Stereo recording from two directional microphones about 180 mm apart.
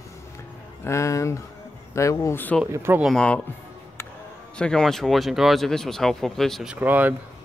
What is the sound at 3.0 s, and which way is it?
Speech, centre (ahead or behind).